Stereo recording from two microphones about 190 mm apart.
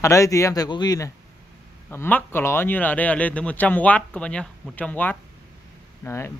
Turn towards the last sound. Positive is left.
turn(degrees=15)  # may be behind; listen again after turning